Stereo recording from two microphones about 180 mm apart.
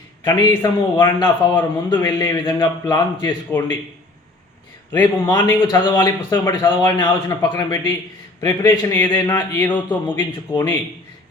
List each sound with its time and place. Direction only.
0.3 s a man's voice: 25° left (ahead or behind)
5.2 s a man's voice: 25° left (ahead or behind)
9.3 s a man's voice: 10° left (ahead or behind)
10.2 s a man's voice: 25° left (ahead or behind)